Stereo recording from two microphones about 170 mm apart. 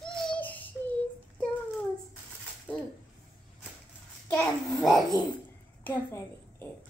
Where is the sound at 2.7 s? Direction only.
10° left (ahead or behind).